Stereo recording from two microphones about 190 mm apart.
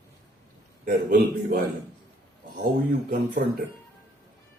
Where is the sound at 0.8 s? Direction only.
45° right (ahead or behind).